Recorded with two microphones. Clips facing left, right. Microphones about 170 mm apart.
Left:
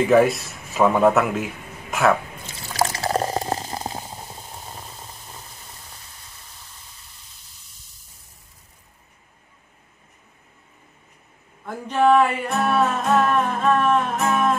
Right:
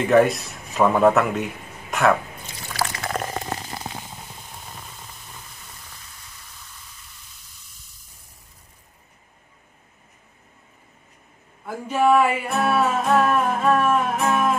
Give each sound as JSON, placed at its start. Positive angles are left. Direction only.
{"t": 0.0, "sound": "a man's voice", "side_deg": 0}
{"t": 2.8, "sound": "boiling", "side_deg": 35}
{"t": 11.6, "sound": "music", "side_deg": -5}